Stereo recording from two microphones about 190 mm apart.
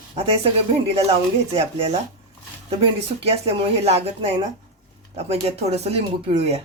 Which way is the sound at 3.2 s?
30° right (ahead or behind).